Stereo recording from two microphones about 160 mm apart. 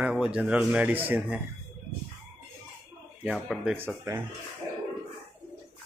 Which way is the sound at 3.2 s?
5° right (ahead or behind).